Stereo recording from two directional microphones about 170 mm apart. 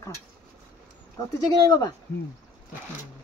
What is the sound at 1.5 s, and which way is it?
Speech, 25° left (ahead or behind).